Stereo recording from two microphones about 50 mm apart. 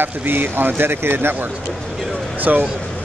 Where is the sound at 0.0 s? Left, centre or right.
Right.